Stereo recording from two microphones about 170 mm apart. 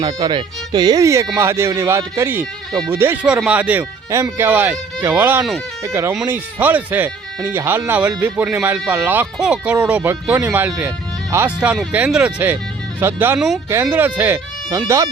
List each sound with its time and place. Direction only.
0.0 s speech: 25° right (ahead or behind)